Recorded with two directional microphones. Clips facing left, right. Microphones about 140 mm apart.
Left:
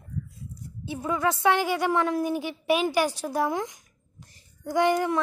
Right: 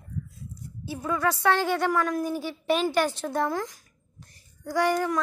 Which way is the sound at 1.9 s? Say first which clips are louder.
Left 2 dB; 25° left (ahead or behind).